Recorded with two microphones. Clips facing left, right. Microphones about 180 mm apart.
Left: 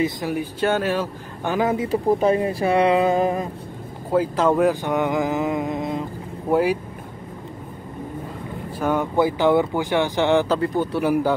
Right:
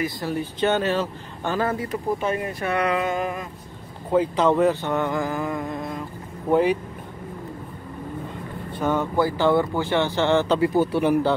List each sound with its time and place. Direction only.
0.0 s speech: 15° left (ahead or behind)
1.9 s speech: 35° left (ahead or behind)
4.1 s speech: 5° left (ahead or behind); by 6.0 s 20° left (ahead or behind)
6.5 s speech: 10° left (ahead or behind)
8.7 s speech: 10° left (ahead or behind)
10.6 s speech: 5° right (ahead or behind)
11.0 s speech: 5° left (ahead or behind)